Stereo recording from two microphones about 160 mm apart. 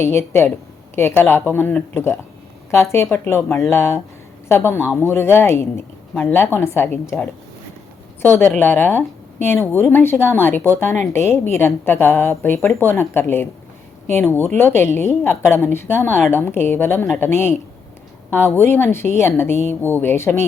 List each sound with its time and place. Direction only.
0.0 s speech: 15° left (ahead or behind)
8.2 s speech: 15° left (ahead or behind)